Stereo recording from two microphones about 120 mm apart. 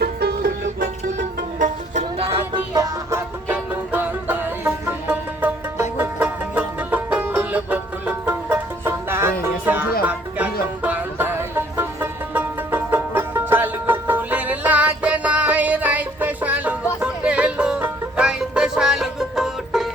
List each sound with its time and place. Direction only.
1.5 s music: 80° right; by 2.4 s 65° right (ahead or behind)
2.5 s music: 30° right (ahead or behind); by 19.9 s centre (ahead or behind)